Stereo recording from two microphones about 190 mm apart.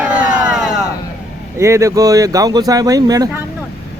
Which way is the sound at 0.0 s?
5° right (ahead or behind).